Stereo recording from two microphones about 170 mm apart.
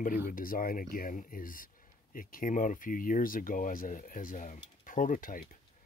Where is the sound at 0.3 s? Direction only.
55° left (ahead or behind).